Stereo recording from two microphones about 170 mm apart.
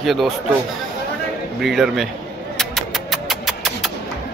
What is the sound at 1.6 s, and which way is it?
Speech, centre (ahead or behind).